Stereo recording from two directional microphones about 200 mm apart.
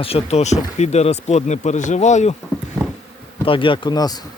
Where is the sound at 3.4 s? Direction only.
25° left (ahead or behind).